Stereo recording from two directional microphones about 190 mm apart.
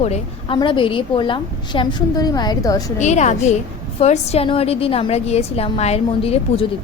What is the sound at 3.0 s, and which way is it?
A woman's voice, 35° left (ahead or behind).